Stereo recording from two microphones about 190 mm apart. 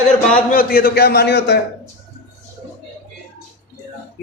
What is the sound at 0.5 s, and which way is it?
A man's voice, 50° left (ahead or behind).